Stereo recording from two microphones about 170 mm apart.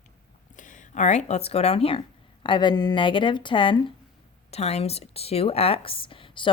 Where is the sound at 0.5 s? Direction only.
50° left (ahead or behind).